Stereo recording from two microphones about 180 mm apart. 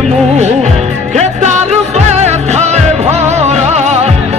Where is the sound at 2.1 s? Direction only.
40° right (ahead or behind).